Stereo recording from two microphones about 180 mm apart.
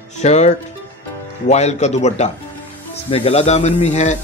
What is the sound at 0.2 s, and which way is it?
Speech, 40° left (ahead or behind).